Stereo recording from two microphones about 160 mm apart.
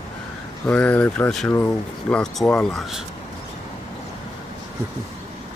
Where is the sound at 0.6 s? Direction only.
10° left (ahead or behind).